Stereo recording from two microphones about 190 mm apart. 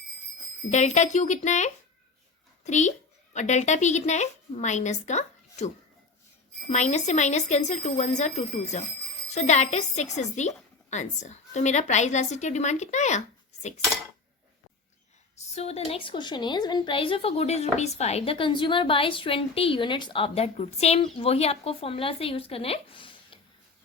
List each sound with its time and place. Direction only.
0.7 s a woman's voice: 40° left (ahead or behind)
15.5 s a woman's voice: 30° left (ahead or behind)